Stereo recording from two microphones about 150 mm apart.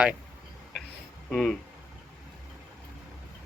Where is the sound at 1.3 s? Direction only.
5° left (ahead or behind).